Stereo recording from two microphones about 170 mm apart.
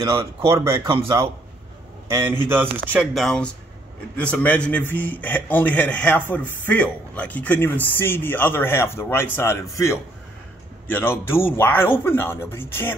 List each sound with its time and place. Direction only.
0.5 s a man's voice: 15° right (ahead or behind)
0.8 s a man's voice: 30° right (ahead or behind)
2.0 s a man's voice: 15° right (ahead or behind)
3.2 s speech: 5° left (ahead or behind)